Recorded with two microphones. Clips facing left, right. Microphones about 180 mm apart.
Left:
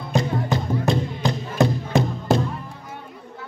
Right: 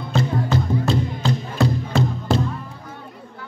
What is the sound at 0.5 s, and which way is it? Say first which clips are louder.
Music: right 1 dB; 15° left (ahead or behind).